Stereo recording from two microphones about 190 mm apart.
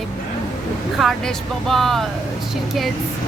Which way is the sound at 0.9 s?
Centre (ahead or behind).